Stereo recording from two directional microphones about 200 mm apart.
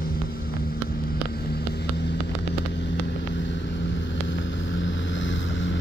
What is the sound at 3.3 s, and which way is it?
Vehicle, 65° left (ahead or behind).